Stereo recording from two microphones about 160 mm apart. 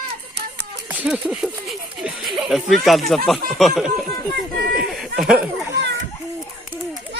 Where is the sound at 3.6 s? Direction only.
Centre (ahead or behind).